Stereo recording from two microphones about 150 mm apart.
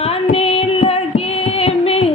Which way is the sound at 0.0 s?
40° left (ahead or behind).